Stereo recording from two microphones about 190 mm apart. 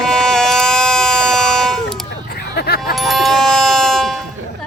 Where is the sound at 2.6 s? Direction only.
55° left (ahead or behind).